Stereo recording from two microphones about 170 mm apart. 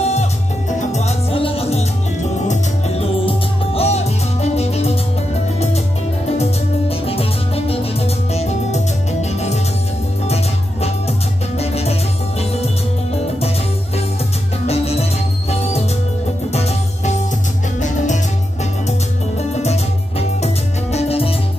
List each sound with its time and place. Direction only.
0.0 s music: 40° left (ahead or behind)
6.9 s music: 35° left (ahead or behind)
14.7 s music: 35° left (ahead or behind)
16.5 s music: 40° left (ahead or behind)